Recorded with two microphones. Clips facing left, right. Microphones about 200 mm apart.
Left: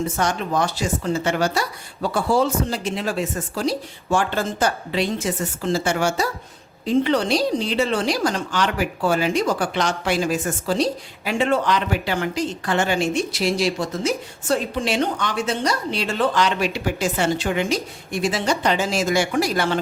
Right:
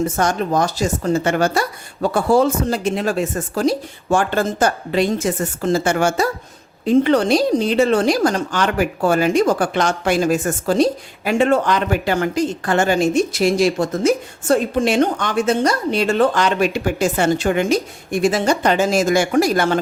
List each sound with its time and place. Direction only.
0.2 s speech: 45° right (ahead or behind)